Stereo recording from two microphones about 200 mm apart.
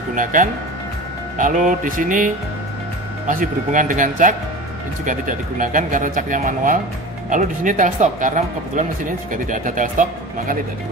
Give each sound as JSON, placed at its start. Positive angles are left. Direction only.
{"t": 0.1, "sound": "speech", "side_deg": -40}